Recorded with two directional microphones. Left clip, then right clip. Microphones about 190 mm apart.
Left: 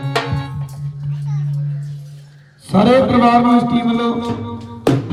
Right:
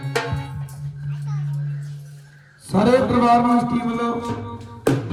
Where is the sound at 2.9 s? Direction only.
60° left (ahead or behind).